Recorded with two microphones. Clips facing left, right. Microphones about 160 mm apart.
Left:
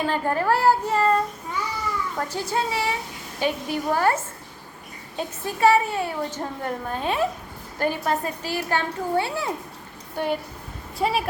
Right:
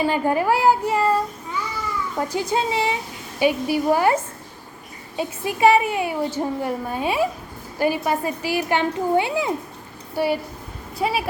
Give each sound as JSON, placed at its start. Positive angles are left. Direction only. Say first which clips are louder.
{"t": 0.0, "sound": "a woman's voice", "louder": "right 3 dB", "side_deg": -10}